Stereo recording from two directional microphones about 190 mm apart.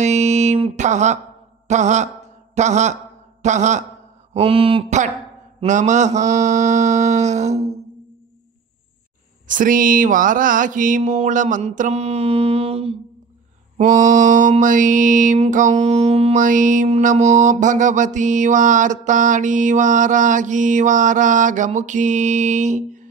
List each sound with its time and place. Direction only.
0.0 s music: 35° right (ahead or behind)
1.7 s a sound: 40° right (ahead or behind)
3.4 s mantra: 40° right (ahead or behind)
9.5 s mantra: 45° right (ahead or behind)
13.7 s mantra: 40° right (ahead or behind)